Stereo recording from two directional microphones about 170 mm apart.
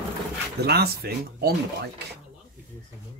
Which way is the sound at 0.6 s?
70° right (ahead or behind).